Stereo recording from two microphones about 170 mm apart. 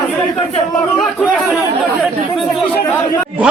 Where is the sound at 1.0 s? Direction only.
Centre (ahead or behind).